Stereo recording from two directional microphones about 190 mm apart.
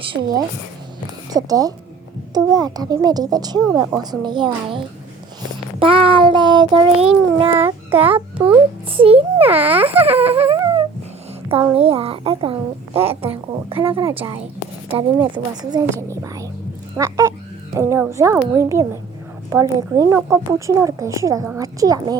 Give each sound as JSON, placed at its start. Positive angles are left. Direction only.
{"t": 0.0, "sound": "a woman's voice", "side_deg": -25}
{"t": 5.8, "sound": "a woman's voice", "side_deg": -30}
{"t": 8.1, "sound": "a child's voice", "side_deg": -10}
{"t": 8.9, "sound": "a child's voice", "side_deg": -30}
{"t": 10.0, "sound": "a sound", "side_deg": -30}
{"t": 11.7, "sound": "a woman's voice", "side_deg": -30}
{"t": 17.0, "sound": "music", "side_deg": -20}
{"t": 17.7, "sound": "a woman's voice", "side_deg": -15}